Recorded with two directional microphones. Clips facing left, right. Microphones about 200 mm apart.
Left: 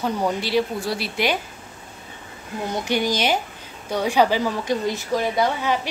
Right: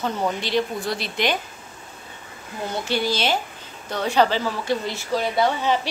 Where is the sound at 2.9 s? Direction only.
15° left (ahead or behind).